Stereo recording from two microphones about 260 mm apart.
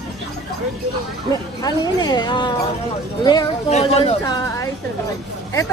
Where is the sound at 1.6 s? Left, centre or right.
Centre.